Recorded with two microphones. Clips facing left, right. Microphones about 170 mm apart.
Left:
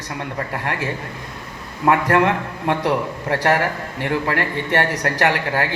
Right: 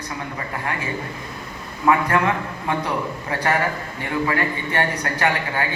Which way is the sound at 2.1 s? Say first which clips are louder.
Left 3 dB; 65° left (ahead or behind).